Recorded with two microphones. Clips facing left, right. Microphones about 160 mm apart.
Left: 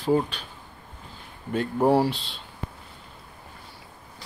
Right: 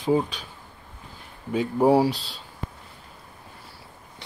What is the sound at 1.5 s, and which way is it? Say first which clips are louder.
Speech: right 2 dB; 10° right (ahead or behind).